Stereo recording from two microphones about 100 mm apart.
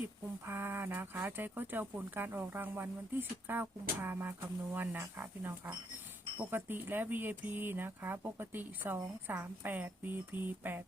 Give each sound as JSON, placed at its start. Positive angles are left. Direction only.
{"t": 0.4, "sound": "speech", "side_deg": -20}